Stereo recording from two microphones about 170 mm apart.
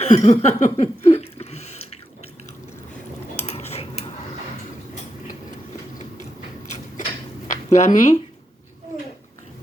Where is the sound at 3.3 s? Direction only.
40° left (ahead or behind).